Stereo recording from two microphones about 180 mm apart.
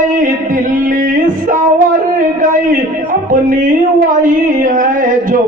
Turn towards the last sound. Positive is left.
turn(degrees=-50)  # may be behind; listen again after turning